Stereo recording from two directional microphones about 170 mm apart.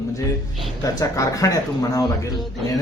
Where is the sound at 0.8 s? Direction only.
20° left (ahead or behind).